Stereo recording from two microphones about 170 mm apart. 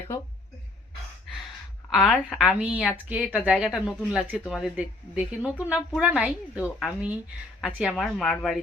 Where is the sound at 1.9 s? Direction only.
Centre (ahead or behind).